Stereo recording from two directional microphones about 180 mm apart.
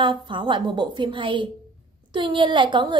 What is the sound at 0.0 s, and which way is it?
A woman's voice, 25° right (ahead or behind).